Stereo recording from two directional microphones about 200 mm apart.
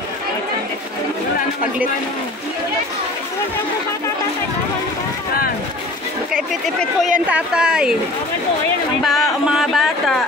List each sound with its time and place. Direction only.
6.5 s speech: centre (ahead or behind)
9.0 s speech: centre (ahead or behind)